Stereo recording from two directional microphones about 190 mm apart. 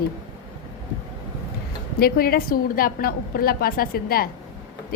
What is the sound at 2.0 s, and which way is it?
A woman's voice, 50° left (ahead or behind).